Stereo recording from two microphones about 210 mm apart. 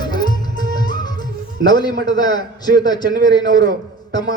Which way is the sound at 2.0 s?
20° left (ahead or behind).